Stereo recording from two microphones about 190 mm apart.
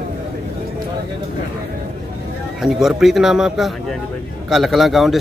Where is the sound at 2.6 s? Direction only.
Centre (ahead or behind).